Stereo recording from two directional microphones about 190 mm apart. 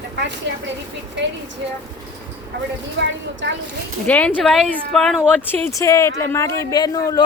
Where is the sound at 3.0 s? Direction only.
70° right (ahead or behind).